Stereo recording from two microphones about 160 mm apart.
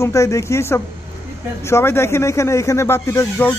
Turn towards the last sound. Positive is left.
turn(degrees=15)  # may be behind; listen again after turning